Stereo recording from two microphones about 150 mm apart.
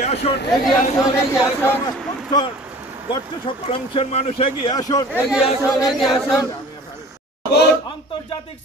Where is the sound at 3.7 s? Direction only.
40° left (ahead or behind).